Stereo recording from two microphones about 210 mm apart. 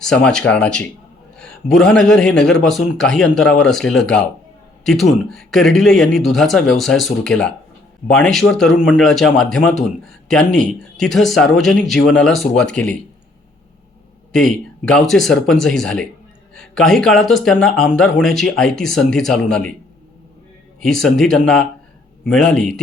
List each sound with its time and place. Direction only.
0.0 s speech: centre (ahead or behind)
14.3 s speech: 5° left (ahead or behind)
21.0 s speech: 5° left (ahead or behind)